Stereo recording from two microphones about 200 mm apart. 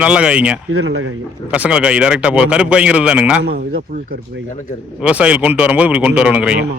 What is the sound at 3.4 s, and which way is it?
Speech, 50° right (ahead or behind).